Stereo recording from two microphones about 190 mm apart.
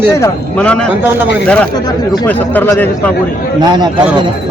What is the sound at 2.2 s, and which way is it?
Speech, 10° left (ahead or behind).